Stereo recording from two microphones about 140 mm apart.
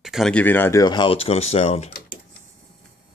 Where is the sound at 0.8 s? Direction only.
35° left (ahead or behind).